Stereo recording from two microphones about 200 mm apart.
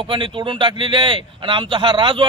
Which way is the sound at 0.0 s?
25° right (ahead or behind).